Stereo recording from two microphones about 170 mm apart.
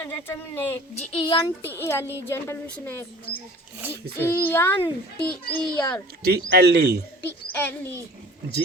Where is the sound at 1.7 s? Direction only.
15° left (ahead or behind).